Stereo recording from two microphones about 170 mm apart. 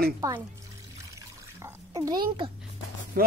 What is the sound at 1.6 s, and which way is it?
Water, 20° right (ahead or behind).